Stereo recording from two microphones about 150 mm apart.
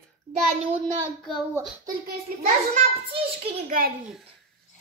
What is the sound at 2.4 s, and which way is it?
Speech, 45° right (ahead or behind).